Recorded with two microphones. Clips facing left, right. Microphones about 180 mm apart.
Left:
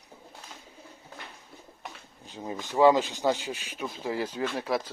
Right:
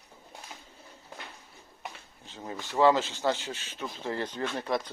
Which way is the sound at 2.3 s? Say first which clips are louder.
Left 3 dB; 15° left (ahead or behind).